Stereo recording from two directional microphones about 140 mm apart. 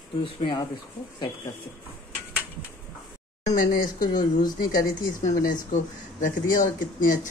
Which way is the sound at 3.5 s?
80° left.